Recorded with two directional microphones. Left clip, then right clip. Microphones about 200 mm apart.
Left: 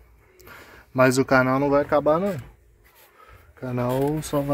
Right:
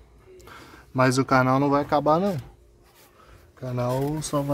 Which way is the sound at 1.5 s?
Centre (ahead or behind).